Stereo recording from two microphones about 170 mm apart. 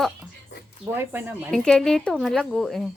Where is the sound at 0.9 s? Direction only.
15° right (ahead or behind).